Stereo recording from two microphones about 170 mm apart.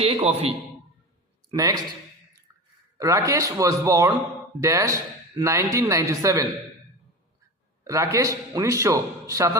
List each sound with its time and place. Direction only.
0.0 s a man's voice: 35° right (ahead or behind)
1.5 s speech: 20° right (ahead or behind)
3.0 s a man's voice: 20° right (ahead or behind)
7.9 s a man's voice: 15° right (ahead or behind)